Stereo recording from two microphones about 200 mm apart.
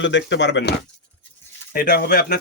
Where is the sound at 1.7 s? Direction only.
50° left (ahead or behind).